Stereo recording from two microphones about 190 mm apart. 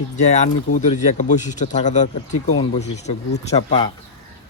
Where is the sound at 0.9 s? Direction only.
40° left (ahead or behind).